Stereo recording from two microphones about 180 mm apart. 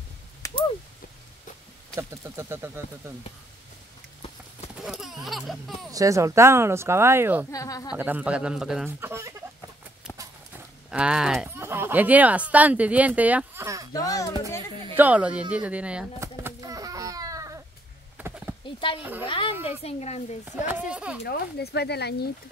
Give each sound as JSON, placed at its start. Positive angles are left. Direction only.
{"t": 0.4, "sound": "a sound", "side_deg": 15}
{"t": 2.0, "sound": "speech", "side_deg": -15}
{"t": 4.8, "sound": "speech", "side_deg": 0}
{"t": 5.9, "sound": "speech", "side_deg": -20}
{"t": 7.5, "sound": "speech", "side_deg": 20}
{"t": 7.9, "sound": "speech", "side_deg": -10}
{"t": 10.9, "sound": "speech", "side_deg": -5}
{"t": 13.9, "sound": "speech", "side_deg": 20}
{"t": 15.0, "sound": "speech", "side_deg": -10}
{"t": 16.2, "sound": "a sound", "side_deg": -20}
{"t": 19.2, "sound": "a woman's voice", "side_deg": 30}
{"t": 20.4, "sound": "speech", "side_deg": -10}
{"t": 21.2, "sound": "speech", "side_deg": 65}